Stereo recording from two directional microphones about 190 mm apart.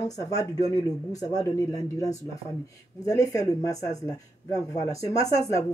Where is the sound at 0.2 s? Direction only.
15° left (ahead or behind).